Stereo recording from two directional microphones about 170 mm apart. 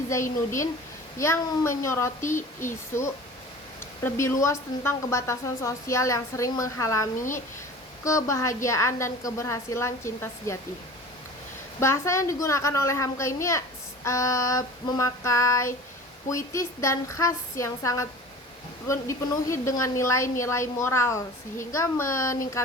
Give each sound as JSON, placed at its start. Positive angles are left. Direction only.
{"t": 1.2, "sound": "a woman's voice", "side_deg": 15}
{"t": 11.8, "sound": "a woman's voice", "side_deg": 15}